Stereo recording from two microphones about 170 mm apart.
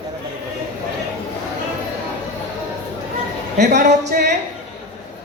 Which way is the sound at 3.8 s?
45° right (ahead or behind).